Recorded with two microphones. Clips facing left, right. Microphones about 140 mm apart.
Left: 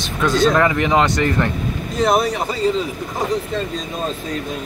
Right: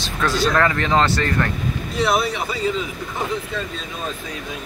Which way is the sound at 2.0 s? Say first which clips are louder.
Left 3 dB; 45° left (ahead or behind).